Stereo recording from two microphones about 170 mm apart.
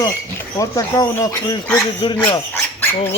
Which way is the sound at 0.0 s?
20° left (ahead or behind).